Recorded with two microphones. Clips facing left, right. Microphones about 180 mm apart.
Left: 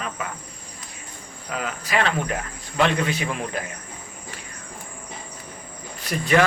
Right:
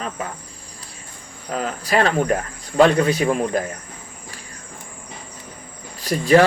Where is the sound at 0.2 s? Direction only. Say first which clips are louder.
Right 3 dB; 35° right (ahead or behind).